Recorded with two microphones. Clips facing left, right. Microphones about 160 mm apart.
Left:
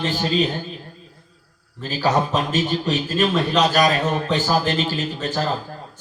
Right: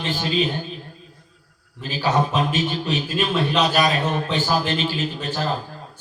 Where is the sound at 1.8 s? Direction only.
40° left (ahead or behind).